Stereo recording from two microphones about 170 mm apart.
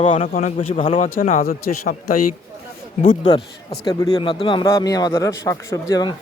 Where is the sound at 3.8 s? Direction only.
20° left (ahead or behind).